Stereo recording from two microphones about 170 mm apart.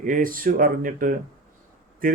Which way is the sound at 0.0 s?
55° right (ahead or behind).